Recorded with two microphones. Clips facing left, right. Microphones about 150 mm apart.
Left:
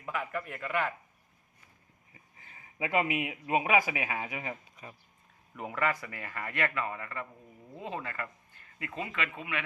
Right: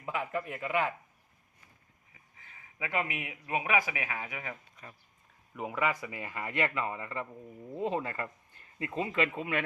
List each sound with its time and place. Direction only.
0.0 s speech: 20° right (ahead or behind)
2.5 s a man's voice: 30° left (ahead or behind)
5.5 s speech: 5° right (ahead or behind); by 9.6 s 40° right (ahead or behind)